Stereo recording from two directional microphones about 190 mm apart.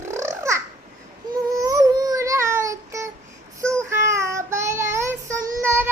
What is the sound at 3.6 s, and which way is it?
Child singing, 15° right (ahead or behind).